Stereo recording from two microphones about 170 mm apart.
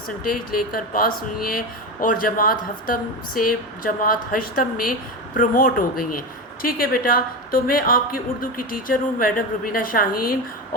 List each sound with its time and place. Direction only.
0.5 s speech: 60° left (ahead or behind)